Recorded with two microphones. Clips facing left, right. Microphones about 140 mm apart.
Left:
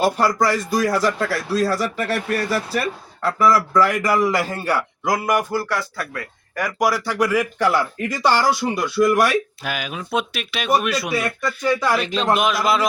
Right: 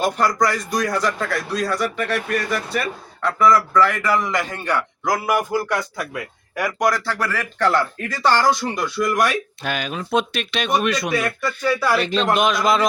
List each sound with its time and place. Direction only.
0.3 s a man's voice: 5° left (ahead or behind); by 6.2 s 15° right (ahead or behind)
6.6 s speech: centre (ahead or behind)